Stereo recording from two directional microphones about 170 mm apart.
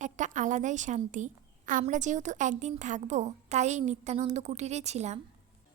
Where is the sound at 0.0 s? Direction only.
45° right (ahead or behind).